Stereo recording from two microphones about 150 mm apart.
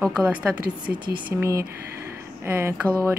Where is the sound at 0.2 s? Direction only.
10° right (ahead or behind).